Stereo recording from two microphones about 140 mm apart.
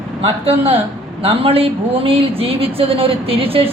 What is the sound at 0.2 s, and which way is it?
Speech, 45° right (ahead or behind).